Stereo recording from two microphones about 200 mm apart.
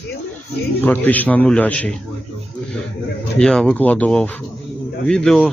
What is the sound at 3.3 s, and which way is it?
Speech, 5° left (ahead or behind).